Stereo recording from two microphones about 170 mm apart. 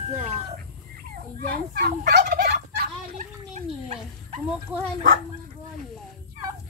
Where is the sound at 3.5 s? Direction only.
40° right (ahead or behind).